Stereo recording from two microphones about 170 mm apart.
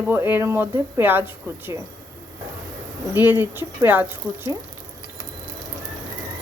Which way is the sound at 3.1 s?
10° right (ahead or behind).